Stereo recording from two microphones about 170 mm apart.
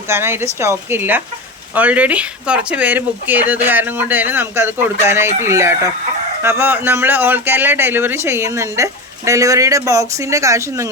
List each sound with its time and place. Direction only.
0.1 s speech: 15° right (ahead or behind)